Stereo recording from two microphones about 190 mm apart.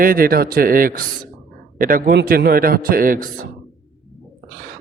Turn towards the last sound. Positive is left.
turn(degrees=-45)  # may be behind; listen again after turning